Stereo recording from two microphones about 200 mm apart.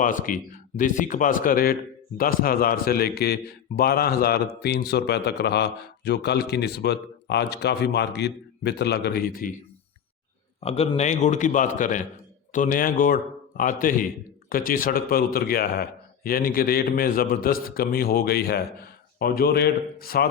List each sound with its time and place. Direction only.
0.0 s a man's voice: 40° left (ahead or behind)
10.6 s a man's voice: 30° left (ahead or behind); by 20.2 s 50° left (ahead or behind)